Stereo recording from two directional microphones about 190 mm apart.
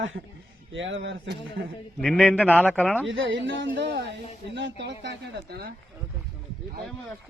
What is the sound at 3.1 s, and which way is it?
A woman's voice, 70° right (ahead or behind).